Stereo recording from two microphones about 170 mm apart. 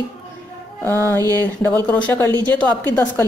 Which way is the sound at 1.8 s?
10° left (ahead or behind).